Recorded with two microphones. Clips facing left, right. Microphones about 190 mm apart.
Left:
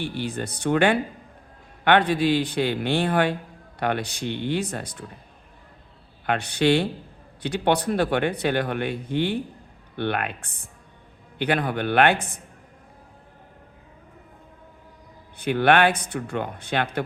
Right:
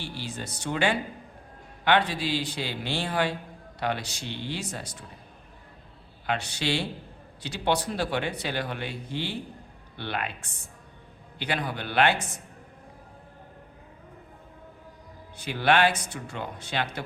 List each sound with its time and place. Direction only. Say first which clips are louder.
0.0 s speech: left 8 dB; 55° left (ahead or behind)
6.2 s speech: left 8 dB; 55° left (ahead or behind)
15.4 s speech: left 4 dB; 55° left (ahead or behind)